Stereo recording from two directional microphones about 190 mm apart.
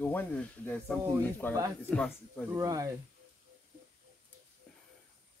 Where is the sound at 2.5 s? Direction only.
20° right (ahead or behind).